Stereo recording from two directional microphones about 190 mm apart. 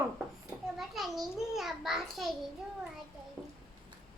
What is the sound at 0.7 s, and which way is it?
A child's voice, centre (ahead or behind).